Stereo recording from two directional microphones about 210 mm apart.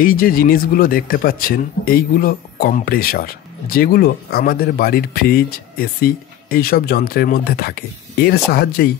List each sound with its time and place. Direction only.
0.0 s speech: 40° left (ahead or behind)